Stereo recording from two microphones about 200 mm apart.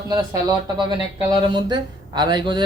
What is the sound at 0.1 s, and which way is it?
Speech, 20° right (ahead or behind).